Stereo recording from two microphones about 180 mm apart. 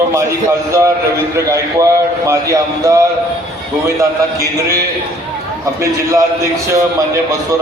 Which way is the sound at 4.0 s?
15° right (ahead or behind).